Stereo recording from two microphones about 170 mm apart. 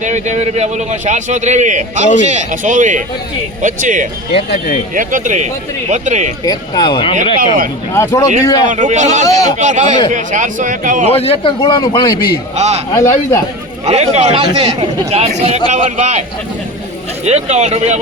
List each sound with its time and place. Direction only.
0.0 s a man's voice: 45° right (ahead or behind)
6.4 s a man's voice: 25° left (ahead or behind)
7.3 s speech: 55° right (ahead or behind)
7.9 s a man's voice: 15° left (ahead or behind)
8.7 s a man's voice: 45° right (ahead or behind)
9.2 s a man's voice: 20° left (ahead or behind)
9.6 s a man's voice: 45° right (ahead or behind)
11.1 s a man's voice: 35° left (ahead or behind)
12.5 s speech: 40° right (ahead or behind)
12.9 s a man's voice: 20° left (ahead or behind)
13.8 s speech: 40° right (ahead or behind)
17.2 s speech: 40° right (ahead or behind)